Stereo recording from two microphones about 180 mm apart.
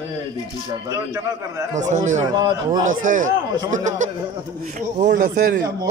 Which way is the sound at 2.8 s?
45° right (ahead or behind).